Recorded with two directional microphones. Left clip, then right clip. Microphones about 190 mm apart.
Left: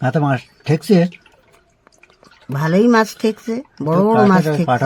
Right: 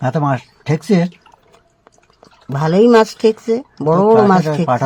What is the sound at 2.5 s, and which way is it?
Speech, 30° right (ahead or behind).